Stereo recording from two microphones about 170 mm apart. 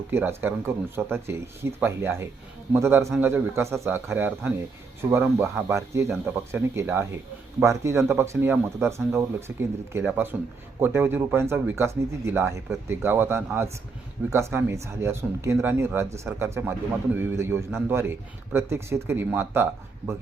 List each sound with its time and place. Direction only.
0.1 s speech: 15° right (ahead or behind)